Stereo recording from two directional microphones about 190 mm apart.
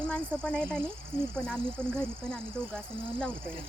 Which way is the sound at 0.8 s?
10° right (ahead or behind).